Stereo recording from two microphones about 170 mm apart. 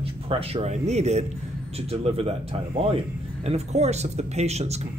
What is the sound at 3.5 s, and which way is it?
Speech, 40° right (ahead or behind).